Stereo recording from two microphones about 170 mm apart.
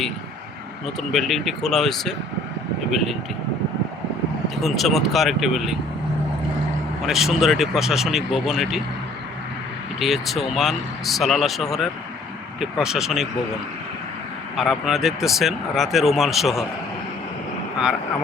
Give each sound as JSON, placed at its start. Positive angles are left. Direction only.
{"t": 1.1, "sound": "speech", "side_deg": 0}
{"t": 4.6, "sound": "speech", "side_deg": 0}
{"t": 7.1, "sound": "speech", "side_deg": 0}
{"t": 10.0, "sound": "speech", "side_deg": 0}
{"t": 14.5, "sound": "speech", "side_deg": 0}